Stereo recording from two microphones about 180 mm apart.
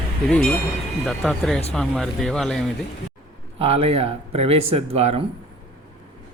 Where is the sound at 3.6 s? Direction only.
35° right (ahead or behind).